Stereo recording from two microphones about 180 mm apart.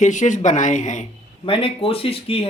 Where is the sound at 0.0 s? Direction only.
45° left (ahead or behind).